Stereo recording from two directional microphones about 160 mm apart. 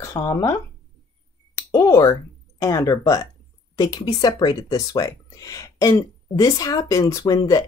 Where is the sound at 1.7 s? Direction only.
20° left (ahead or behind).